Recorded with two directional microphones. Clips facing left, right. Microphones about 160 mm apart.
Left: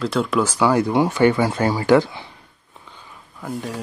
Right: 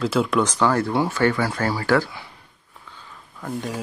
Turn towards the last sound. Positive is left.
turn(degrees=0)  # may be behind; listen again after turning